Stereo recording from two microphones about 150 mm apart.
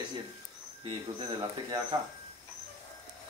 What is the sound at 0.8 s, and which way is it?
Speech, 30° right (ahead or behind).